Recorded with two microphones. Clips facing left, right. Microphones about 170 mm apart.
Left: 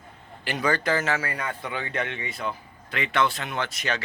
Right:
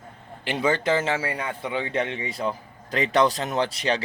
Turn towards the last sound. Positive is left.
turn(degrees=-35)  # may be behind; listen again after turning